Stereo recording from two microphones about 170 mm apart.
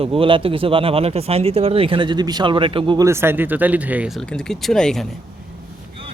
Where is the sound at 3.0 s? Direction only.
15° right (ahead or behind).